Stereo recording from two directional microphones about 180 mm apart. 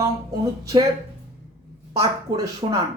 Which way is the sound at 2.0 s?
20° right (ahead or behind).